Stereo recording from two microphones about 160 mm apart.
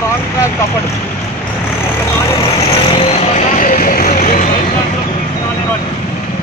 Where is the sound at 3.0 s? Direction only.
45° left (ahead or behind).